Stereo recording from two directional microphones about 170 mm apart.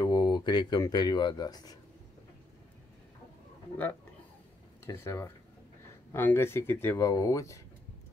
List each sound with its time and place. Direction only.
0.0 s speech: 25° left (ahead or behind)
4.8 s speech: 15° left (ahead or behind)